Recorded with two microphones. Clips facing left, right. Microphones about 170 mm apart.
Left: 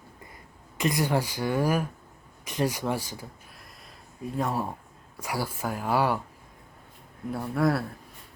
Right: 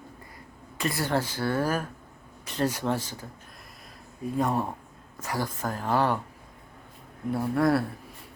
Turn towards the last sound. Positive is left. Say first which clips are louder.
# right 2 dB
turn(degrees=0)  # may be behind; listen again after turning